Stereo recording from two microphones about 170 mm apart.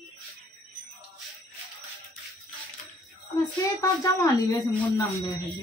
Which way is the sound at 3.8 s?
20° left (ahead or behind).